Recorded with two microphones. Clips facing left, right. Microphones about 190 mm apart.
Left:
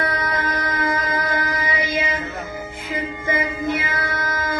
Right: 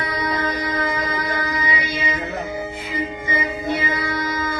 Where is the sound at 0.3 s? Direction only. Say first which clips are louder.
Right 1 dB; 50° left (ahead or behind).